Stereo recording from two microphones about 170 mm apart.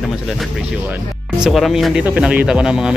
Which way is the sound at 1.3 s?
Centre (ahead or behind).